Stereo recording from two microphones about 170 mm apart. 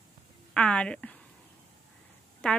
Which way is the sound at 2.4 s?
5° left (ahead or behind).